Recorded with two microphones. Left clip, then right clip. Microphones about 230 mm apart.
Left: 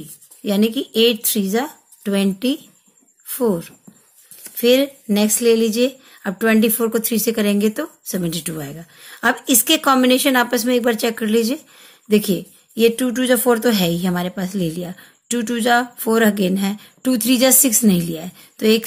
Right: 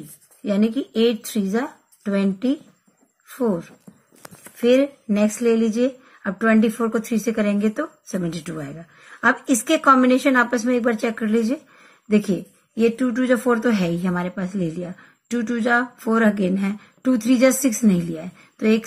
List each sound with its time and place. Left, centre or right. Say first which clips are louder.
0.4 s speech: left 3 dB; left